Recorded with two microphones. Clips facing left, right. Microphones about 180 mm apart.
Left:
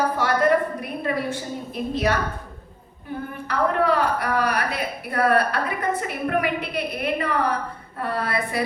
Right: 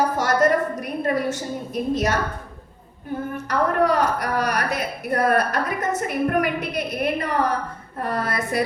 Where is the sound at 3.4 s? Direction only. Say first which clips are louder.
Right 1 dB; 45° right (ahead or behind).